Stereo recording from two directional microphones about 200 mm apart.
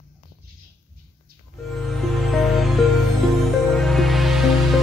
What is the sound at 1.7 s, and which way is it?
Music, centre (ahead or behind).